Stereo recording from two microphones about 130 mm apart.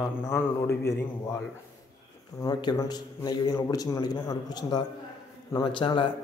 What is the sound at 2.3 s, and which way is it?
A man's voice, 30° left (ahead or behind).